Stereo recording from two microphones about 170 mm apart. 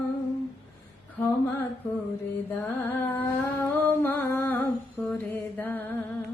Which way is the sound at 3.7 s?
10° left (ahead or behind).